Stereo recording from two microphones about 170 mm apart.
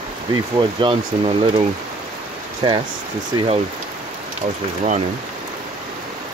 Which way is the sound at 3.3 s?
35° right (ahead or behind).